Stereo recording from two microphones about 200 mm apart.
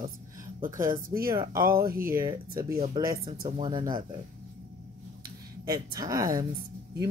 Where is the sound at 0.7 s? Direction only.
45° right (ahead or behind).